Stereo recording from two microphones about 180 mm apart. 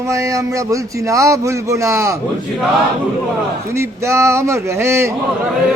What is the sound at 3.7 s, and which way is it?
Speech, 15° right (ahead or behind).